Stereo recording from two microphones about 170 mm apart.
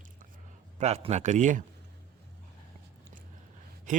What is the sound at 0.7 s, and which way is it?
Speech, 40° right (ahead or behind).